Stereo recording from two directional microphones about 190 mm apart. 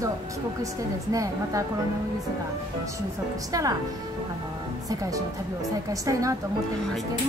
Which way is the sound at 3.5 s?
20° right (ahead or behind).